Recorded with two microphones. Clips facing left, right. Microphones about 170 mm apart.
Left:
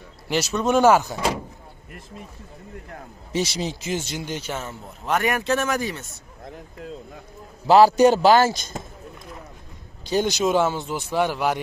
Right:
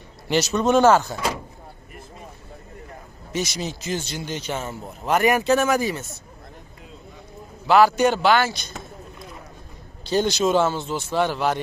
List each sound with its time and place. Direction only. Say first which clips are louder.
0.3 s speech: right 2 dB; centre (ahead or behind)
3.3 s speech: left 2 dB; 30° left (ahead or behind)
4.3 s speech: right 1 dB; 5° left (ahead or behind)
7.6 s a man's voice: left 3 dB; 35° left (ahead or behind)
10.0 s speech: right 1 dB; 15° left (ahead or behind)